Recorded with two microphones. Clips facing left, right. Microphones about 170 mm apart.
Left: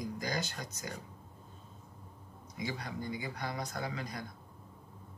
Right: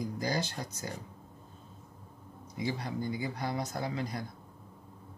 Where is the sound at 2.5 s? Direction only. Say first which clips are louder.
Right 5 dB; 30° right (ahead or behind).